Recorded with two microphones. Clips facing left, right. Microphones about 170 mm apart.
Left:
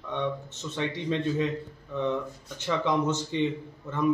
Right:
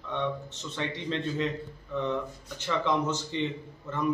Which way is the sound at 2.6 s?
15° left (ahead or behind).